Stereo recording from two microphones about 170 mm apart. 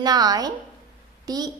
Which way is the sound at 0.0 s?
20° right (ahead or behind).